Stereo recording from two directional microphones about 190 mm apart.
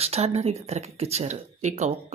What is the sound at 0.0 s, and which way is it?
Speech, 35° right (ahead or behind).